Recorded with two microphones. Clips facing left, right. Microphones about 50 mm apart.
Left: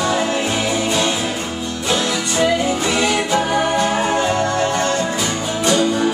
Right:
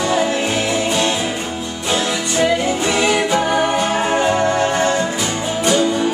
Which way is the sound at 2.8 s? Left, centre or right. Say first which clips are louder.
Right 2 dB; centre.